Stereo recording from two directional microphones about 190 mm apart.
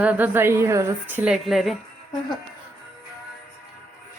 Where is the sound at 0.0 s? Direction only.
10° right (ahead or behind).